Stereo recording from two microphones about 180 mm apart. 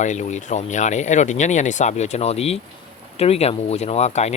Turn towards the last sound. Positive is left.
turn(degrees=40)  # may be behind; listen again after turning